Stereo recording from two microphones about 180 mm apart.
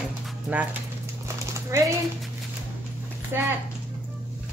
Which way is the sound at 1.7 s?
15° right (ahead or behind).